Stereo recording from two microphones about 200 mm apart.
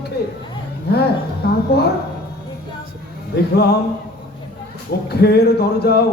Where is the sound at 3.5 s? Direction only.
55° left (ahead or behind).